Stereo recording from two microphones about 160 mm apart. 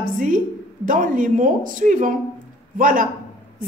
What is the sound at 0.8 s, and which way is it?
A woman's voice, 55° right (ahead or behind).